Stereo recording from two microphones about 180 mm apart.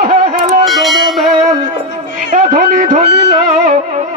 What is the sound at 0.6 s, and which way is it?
Bell, centre (ahead or behind).